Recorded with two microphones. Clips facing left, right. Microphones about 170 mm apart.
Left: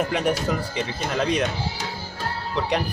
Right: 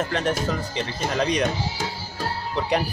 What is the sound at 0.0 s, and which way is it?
Speech, 10° left (ahead or behind).